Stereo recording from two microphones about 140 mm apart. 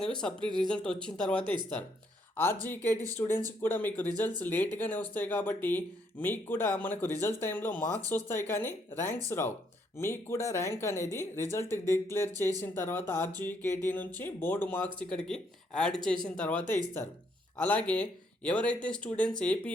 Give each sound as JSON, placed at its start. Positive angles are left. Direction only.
{"t": 0.0, "sound": "speech", "side_deg": 5}